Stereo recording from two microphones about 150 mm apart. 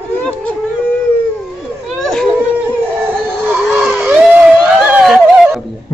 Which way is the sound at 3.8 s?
Centre (ahead or behind).